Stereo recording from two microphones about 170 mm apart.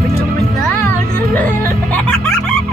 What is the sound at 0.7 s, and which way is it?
Music, 10° left (ahead or behind).